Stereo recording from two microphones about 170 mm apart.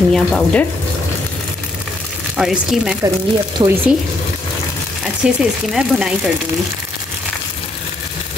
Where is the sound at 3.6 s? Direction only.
25° right (ahead or behind).